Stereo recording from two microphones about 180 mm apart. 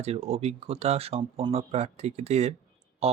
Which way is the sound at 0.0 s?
35° right (ahead or behind).